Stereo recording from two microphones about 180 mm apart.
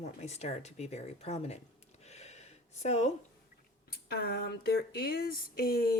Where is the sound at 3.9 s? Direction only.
60° left (ahead or behind).